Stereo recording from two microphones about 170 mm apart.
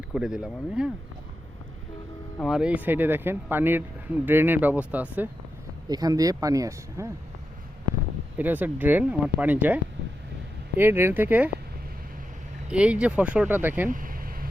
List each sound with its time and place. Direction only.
0.1 s speech: 5° right (ahead or behind)
2.4 s speech: 5° right (ahead or behind)
5.9 s speech: 20° right (ahead or behind)
8.4 s speech: 10° right (ahead or behind)
12.7 s speech: 5° right (ahead or behind)
13.9 s vehicle: 55° right (ahead or behind)